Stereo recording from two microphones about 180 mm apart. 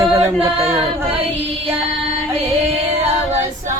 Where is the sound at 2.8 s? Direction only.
35° right (ahead or behind).